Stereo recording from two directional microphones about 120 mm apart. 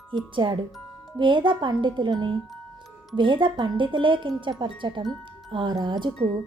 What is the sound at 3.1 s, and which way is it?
Speech, 45° right (ahead or behind).